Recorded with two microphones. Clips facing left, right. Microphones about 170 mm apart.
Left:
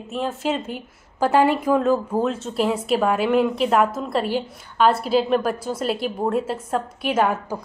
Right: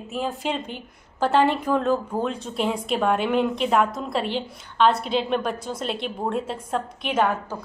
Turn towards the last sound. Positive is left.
turn(degrees=10)  # may be behind; listen again after turning